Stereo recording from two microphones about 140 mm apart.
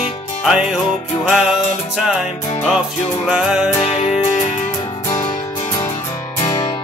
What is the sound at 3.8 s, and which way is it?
Music, 50° left (ahead or behind).